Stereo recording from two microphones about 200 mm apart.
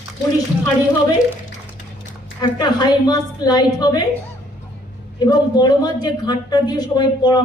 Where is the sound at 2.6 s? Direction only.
20° left (ahead or behind).